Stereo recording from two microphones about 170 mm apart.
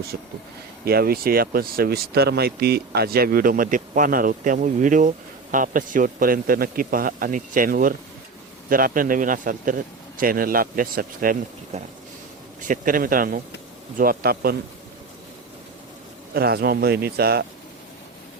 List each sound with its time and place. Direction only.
0.9 s speech: 65° right (ahead or behind)
12.6 s speech: 50° right (ahead or behind)
16.3 s speech: 65° right (ahead or behind)